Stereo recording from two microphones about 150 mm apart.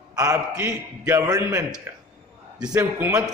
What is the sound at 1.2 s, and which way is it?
Speech, 25° right (ahead or behind).